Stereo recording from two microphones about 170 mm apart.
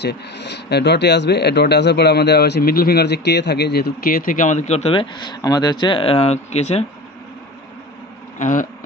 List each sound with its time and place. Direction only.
0.0 s speech: 85° left; by 6.8 s 40° left (ahead or behind)
8.4 s insect: 50° left (ahead or behind)